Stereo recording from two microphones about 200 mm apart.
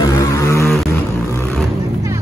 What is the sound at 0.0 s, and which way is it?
Vehicle, 15° left (ahead or behind).